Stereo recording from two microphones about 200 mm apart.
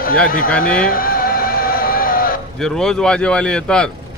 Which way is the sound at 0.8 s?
45° left (ahead or behind).